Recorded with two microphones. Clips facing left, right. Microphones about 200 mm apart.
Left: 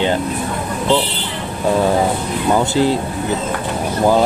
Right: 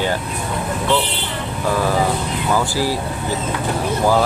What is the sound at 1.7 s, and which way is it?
Speech, 25° left (ahead or behind).